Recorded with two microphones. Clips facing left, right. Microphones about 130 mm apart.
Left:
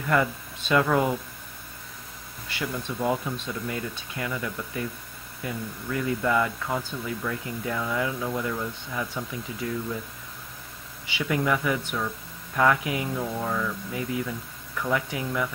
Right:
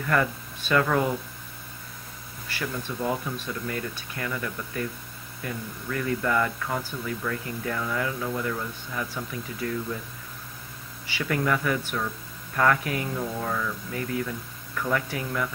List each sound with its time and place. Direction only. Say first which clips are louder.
0.0 s speech: left 1 dB; 15° left (ahead or behind)
2.5 s speech: left 1 dB; 15° left (ahead or behind)
11.1 s speech: left 1 dB; 20° left (ahead or behind)
13.9 s speech: right 1 dB; 20° left (ahead or behind)